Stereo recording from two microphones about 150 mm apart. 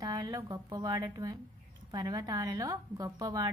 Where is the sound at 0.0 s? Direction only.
25° right (ahead or behind).